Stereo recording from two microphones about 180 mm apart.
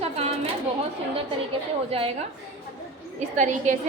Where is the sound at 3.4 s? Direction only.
45° right (ahead or behind).